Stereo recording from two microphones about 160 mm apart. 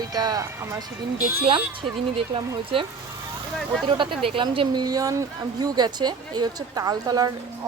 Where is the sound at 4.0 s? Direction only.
30° right (ahead or behind).